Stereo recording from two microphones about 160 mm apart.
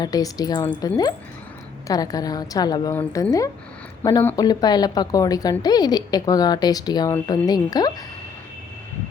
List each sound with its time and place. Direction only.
0.0 s a woman's voice: 25° left (ahead or behind)
4.4 s a woman's voice: 25° left (ahead or behind)